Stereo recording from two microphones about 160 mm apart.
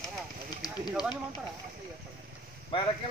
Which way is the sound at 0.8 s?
Centre (ahead or behind).